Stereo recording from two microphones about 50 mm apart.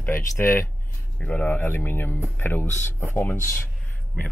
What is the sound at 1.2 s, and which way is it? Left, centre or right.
Speech, left.